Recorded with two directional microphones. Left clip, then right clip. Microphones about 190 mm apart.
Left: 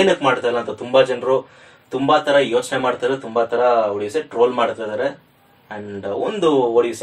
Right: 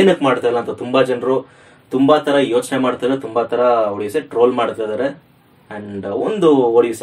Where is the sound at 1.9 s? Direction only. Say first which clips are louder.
Right 2 dB; 40° right (ahead or behind).